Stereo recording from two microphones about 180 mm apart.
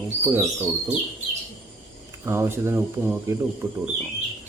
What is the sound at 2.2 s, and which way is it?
Speech, 15° right (ahead or behind).